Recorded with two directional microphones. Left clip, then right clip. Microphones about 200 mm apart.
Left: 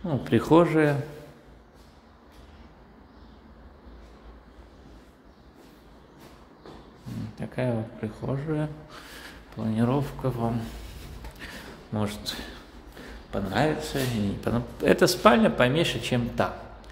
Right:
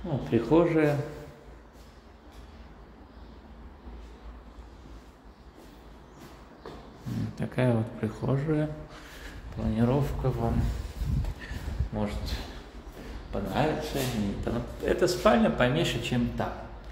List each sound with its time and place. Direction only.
0.3 s speech: 35° left (ahead or behind)
7.3 s speech: 5° right (ahead or behind)
8.5 s speech: 25° left (ahead or behind)
11.3 s a sound: 35° left (ahead or behind)
13.3 s speech: 35° left (ahead or behind)